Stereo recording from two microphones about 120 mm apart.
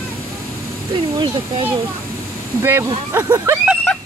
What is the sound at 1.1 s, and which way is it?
Speech, 40° right (ahead or behind).